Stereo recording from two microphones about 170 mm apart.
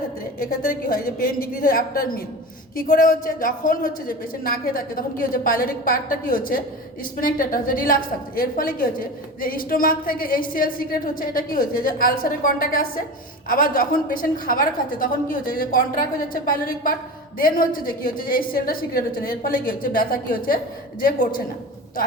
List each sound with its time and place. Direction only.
0.3 s a woman's voice: 55° left (ahead or behind)